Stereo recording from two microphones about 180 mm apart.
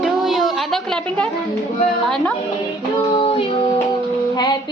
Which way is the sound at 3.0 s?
25° left (ahead or behind).